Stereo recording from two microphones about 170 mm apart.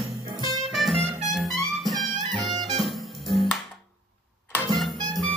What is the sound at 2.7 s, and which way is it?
Music, centre (ahead or behind).